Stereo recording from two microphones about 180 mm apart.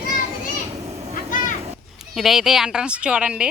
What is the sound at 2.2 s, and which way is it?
Speech, centre (ahead or behind).